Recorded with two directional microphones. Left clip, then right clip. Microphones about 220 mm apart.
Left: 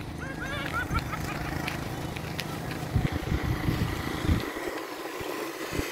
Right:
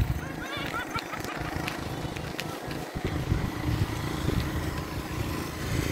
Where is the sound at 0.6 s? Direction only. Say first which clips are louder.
Left 1 dB; 45° right (ahead or behind).